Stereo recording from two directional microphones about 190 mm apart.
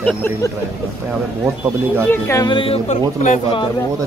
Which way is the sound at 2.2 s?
20° left (ahead or behind).